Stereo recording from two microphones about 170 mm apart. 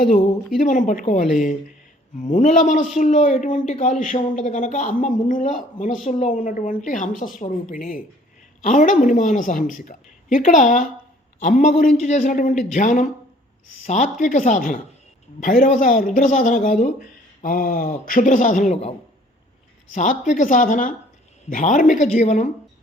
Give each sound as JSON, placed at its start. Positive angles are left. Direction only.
{"t": 0.1, "sound": "a man's voice", "side_deg": 50}